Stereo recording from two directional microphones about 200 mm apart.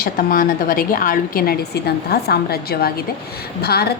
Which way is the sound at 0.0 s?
45° left (ahead or behind).